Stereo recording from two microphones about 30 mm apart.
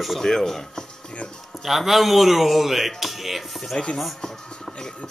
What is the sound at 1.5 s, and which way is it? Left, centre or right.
A man's voice, centre.